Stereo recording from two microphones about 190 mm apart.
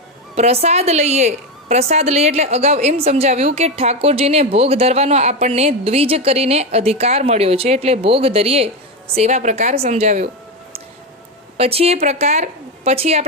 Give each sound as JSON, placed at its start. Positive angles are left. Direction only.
{"t": 0.3, "sound": "a woman's voice", "side_deg": -35}
{"t": 11.5, "sound": "a woman's voice", "side_deg": -30}